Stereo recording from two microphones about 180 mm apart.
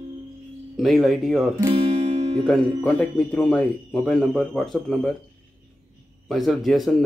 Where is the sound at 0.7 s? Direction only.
Centre (ahead or behind).